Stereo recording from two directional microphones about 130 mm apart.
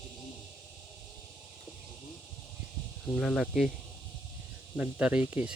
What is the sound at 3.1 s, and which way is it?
Speech, centre (ahead or behind).